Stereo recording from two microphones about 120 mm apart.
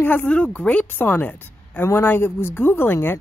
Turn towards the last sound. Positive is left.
turn(degrees=20)  # may be behind; listen again after turning